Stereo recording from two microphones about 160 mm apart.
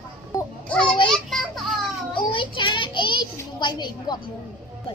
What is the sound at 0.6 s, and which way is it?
Babbling, 5° left (ahead or behind).